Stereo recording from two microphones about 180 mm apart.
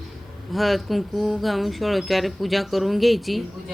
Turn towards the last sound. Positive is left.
turn(degrees=0)  # may be behind; listen again after turning